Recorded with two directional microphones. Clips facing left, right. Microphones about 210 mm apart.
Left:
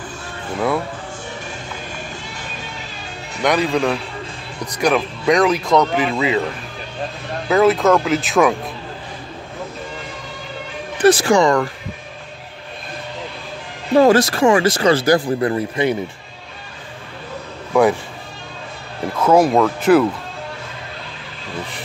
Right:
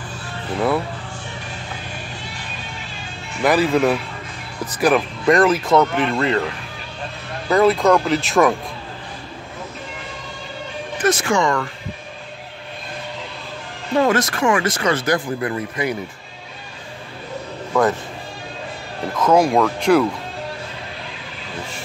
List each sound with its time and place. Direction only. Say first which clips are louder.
3.4 s speech: right 1 dB; 5° right (ahead or behind)
7.4 s speech: left 1 dB; centre (ahead or behind)
11.0 s speech: left 6 dB; 35° left (ahead or behind)
13.9 s speech: left 5 dB; 35° left (ahead or behind)
17.7 s speech: left 3 dB; 15° left (ahead or behind)
19.1 s speech: left 2 dB; 5° left (ahead or behind)